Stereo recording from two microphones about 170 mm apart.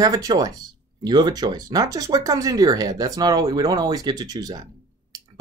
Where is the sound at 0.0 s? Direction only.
20° right (ahead or behind).